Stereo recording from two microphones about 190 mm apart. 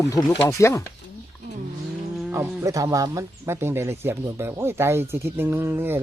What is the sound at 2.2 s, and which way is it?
Speech, 10° right (ahead or behind).